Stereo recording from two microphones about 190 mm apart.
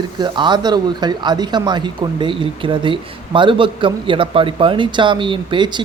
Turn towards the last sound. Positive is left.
turn(degrees=-25)  # may be behind; listen again after turning